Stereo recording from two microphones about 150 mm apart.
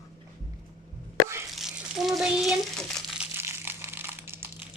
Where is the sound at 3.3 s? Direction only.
15° right (ahead or behind).